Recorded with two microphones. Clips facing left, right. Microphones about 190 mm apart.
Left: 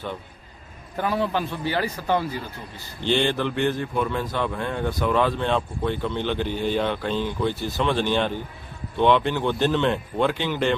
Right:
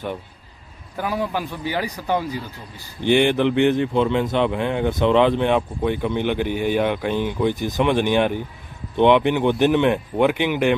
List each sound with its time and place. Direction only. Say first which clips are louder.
0.9 s speech: even; 10° right (ahead or behind)